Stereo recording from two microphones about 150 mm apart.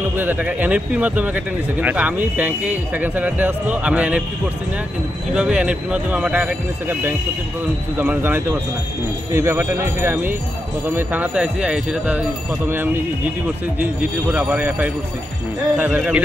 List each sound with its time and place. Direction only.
0.2 s speech: 10° right (ahead or behind)
5.3 s speech: 5° right (ahead or behind)
14.3 s speech: 10° right (ahead or behind)